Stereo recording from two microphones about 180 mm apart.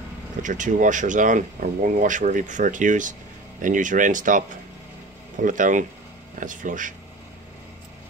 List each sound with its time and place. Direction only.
0.4 s speech: 45° right (ahead or behind)